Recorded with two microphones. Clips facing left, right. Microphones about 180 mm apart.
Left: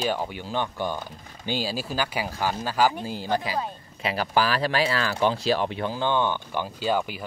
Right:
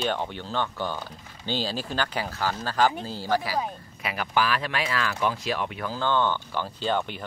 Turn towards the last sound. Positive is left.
turn(degrees=5)  # may be behind; listen again after turning